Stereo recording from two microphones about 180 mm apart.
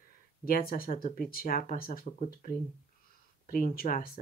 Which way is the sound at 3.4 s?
55° left (ahead or behind).